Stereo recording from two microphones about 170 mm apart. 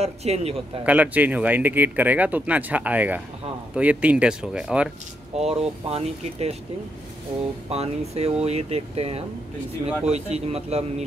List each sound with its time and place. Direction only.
0.0 s speech: 40° right (ahead or behind)
0.8 s speech: 10° right (ahead or behind)
5.4 s speech: 35° right (ahead or behind)
7.7 s speech: 35° right (ahead or behind)